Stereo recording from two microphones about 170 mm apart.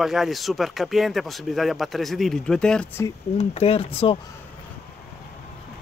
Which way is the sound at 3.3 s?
40° left (ahead or behind).